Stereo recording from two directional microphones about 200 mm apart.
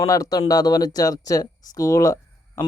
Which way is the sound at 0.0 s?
15° left (ahead or behind).